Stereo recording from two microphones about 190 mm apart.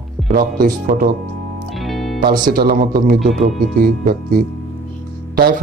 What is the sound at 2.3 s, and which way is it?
A man's voice, 50° right (ahead or behind).